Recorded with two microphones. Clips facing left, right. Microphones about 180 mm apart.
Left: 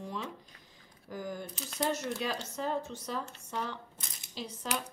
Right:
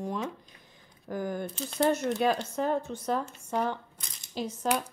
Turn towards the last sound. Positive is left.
turn(degrees=-50)  # may be behind; listen again after turning